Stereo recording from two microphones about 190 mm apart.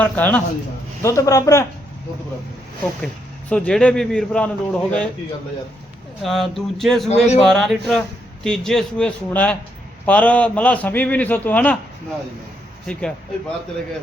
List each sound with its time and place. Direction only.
0.0 s a man's voice: 10° left (ahead or behind)
3.5 s a man's voice: 5° left (ahead or behind)
6.2 s a man's voice: centre (ahead or behind)
7.1 s a man's voice: 35° left (ahead or behind)
7.4 s a man's voice: centre (ahead or behind)
12.9 s a man's voice: 5° left (ahead or behind)